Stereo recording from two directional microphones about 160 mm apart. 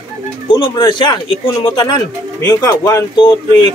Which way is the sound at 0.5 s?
30° left (ahead or behind).